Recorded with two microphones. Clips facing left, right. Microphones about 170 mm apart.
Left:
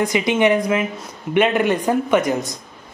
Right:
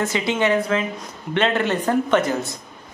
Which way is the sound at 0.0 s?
15° left (ahead or behind).